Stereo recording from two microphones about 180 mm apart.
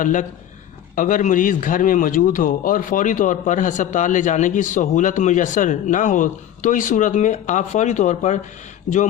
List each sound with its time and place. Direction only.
0.0 s speech: 45° left (ahead or behind)